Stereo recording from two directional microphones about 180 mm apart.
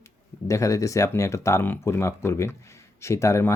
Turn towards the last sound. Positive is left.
turn(degrees=15)  # may be behind; listen again after turning